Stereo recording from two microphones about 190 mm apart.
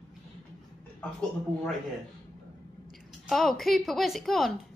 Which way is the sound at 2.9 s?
Centre (ahead or behind).